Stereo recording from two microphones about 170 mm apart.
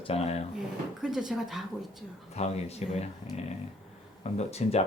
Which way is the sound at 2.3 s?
40° left (ahead or behind).